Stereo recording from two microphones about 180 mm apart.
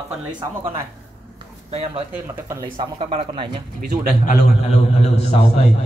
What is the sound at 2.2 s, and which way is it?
Speech, 15° right (ahead or behind).